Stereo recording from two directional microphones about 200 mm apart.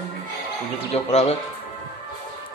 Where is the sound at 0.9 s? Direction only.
35° left (ahead or behind).